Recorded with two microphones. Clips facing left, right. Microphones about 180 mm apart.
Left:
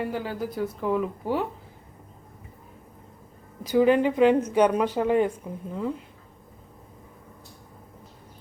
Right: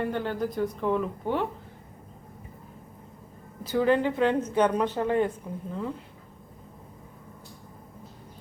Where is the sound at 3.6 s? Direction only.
15° left (ahead or behind).